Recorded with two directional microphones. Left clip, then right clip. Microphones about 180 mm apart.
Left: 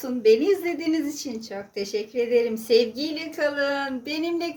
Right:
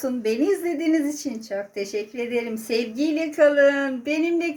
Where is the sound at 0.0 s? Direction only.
40° right (ahead or behind).